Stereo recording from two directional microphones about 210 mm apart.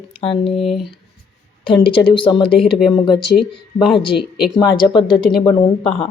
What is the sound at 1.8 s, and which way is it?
A woman's voice, 25° left (ahead or behind).